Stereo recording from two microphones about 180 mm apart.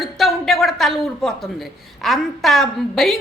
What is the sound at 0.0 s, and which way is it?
A man's voice, centre (ahead or behind).